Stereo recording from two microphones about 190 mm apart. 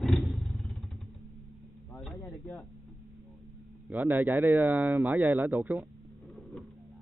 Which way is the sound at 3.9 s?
10° right (ahead or behind).